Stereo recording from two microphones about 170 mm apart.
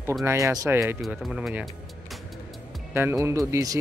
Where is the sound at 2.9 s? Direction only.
15° right (ahead or behind).